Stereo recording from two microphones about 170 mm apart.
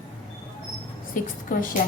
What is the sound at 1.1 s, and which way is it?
Speech, 55° left (ahead or behind).